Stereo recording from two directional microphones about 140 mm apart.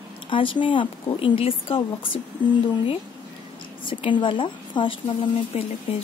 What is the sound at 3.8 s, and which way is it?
A woman's voice, 40° left (ahead or behind).